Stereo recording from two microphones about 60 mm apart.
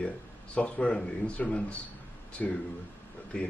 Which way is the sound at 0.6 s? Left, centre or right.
Centre.